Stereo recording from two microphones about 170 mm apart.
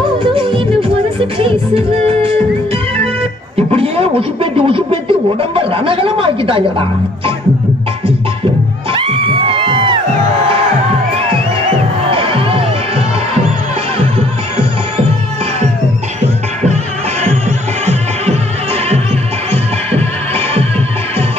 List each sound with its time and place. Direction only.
0.2 s music: 30° right (ahead or behind)
3.5 s a sound: 35° right (ahead or behind)
5.4 s speech: 30° right (ahead or behind)
8.9 s music: 30° right (ahead or behind)
12.1 s music: 30° right (ahead or behind)
17.2 s music: 40° right (ahead or behind)